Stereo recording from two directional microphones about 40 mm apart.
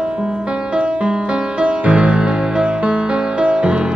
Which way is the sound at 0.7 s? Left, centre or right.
Right.